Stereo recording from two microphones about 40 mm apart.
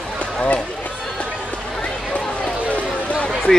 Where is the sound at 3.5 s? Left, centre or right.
Centre.